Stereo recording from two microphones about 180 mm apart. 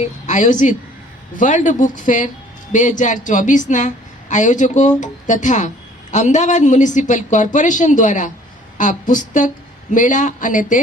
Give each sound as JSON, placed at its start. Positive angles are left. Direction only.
{"t": 0.0, "sound": "speech", "side_deg": 40}